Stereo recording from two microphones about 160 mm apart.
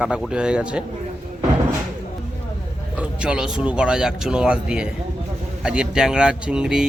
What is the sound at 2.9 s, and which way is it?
Speech, 5° right (ahead or behind).